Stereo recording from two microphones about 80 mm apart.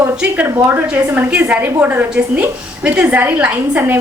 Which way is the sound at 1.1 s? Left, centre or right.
Right.